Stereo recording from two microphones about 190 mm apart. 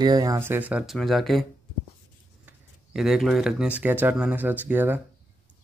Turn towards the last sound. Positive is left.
turn(degrees=-10)  # may be behind; listen again after turning